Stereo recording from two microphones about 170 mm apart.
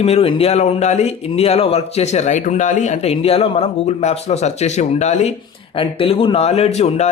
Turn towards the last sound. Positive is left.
turn(degrees=40)  # may be behind; listen again after turning